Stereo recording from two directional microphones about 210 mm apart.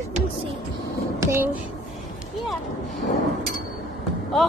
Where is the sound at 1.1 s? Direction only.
10° right (ahead or behind).